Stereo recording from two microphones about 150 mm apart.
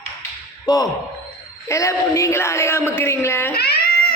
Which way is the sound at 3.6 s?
90° left.